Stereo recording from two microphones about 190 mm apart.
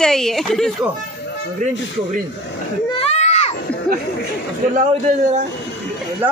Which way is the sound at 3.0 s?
35° left (ahead or behind).